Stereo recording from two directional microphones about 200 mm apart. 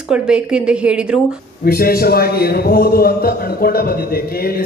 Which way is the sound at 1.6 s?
50° left (ahead or behind).